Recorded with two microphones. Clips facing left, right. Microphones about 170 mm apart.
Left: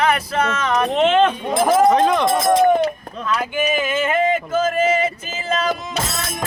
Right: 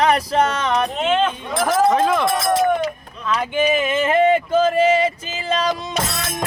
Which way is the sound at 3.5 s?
30° right (ahead or behind).